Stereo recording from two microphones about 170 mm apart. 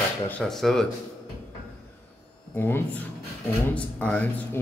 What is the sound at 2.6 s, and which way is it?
Speech, 15° left (ahead or behind).